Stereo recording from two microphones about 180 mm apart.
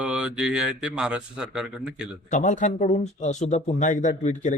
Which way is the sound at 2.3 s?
45° left (ahead or behind).